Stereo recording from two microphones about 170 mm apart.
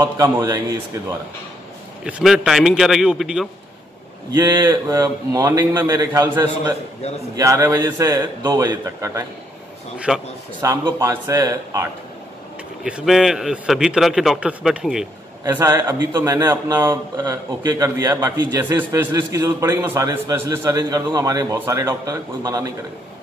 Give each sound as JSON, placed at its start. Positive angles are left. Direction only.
{"t": 0.0, "sound": "a man's voice", "side_deg": -15}
{"t": 2.0, "sound": "a man's voice", "side_deg": -5}
{"t": 4.3, "sound": "a man's voice", "side_deg": -15}
{"t": 9.9, "sound": "a man's voice", "side_deg": -5}
{"t": 10.6, "sound": "a man's voice", "side_deg": -20}
{"t": 12.8, "sound": "a man's voice", "side_deg": -5}
{"t": 15.4, "sound": "a man's voice", "side_deg": -15}